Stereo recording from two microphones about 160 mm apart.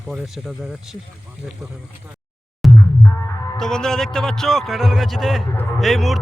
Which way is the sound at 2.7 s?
15° left (ahead or behind).